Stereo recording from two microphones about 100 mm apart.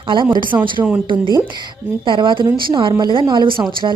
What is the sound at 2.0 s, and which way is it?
A woman's voice, 50° right (ahead or behind).